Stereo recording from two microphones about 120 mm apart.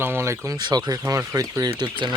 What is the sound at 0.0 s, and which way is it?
Speech, 20° right (ahead or behind).